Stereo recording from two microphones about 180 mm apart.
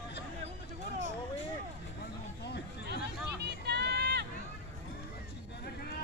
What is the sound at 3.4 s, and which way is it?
Run, 65° right (ahead or behind).